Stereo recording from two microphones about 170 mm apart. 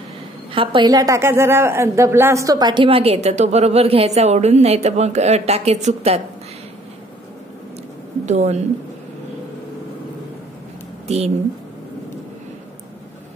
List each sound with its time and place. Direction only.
0.5 s a woman's voice: 30° right (ahead or behind)
8.3 s speech: 40° right (ahead or behind)
11.1 s speech: 40° right (ahead or behind)